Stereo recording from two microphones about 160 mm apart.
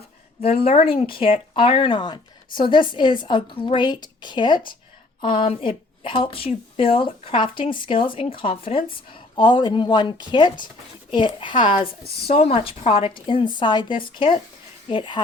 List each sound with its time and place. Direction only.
0.4 s a woman's voice: 40° left (ahead or behind)